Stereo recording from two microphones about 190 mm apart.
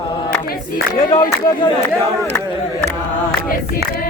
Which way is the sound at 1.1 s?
20° left (ahead or behind).